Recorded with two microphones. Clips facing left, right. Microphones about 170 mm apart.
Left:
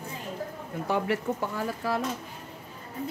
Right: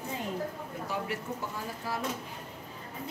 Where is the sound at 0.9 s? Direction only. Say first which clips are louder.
Left 9 dB; 65° left (ahead or behind).